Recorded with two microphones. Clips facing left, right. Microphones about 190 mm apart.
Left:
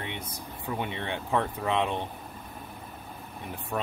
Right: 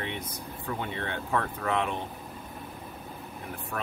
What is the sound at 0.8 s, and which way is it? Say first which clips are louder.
Speech: left 3 dB; 20° left (ahead or behind).